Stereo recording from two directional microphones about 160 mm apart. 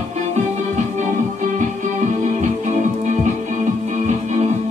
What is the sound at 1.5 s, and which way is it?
Music, 50° right (ahead or behind).